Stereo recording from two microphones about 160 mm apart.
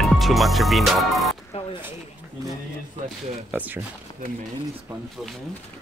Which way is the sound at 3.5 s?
10° right (ahead or behind).